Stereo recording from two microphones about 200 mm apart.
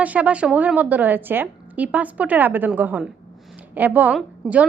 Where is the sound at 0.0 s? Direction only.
5° right (ahead or behind).